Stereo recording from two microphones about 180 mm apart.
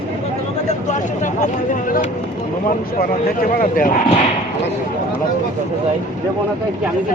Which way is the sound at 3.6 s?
50° left (ahead or behind).